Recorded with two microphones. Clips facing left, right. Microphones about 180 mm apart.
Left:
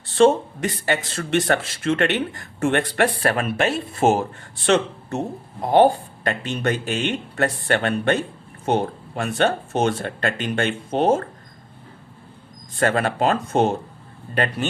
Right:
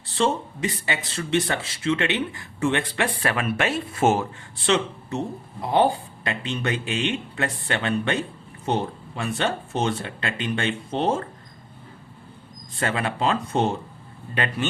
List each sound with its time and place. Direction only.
0.2 s speech: 50° left (ahead or behind); by 4.1 s 35° left (ahead or behind)
4.4 s speech: 50° left (ahead or behind)
12.8 s speech: 45° left (ahead or behind)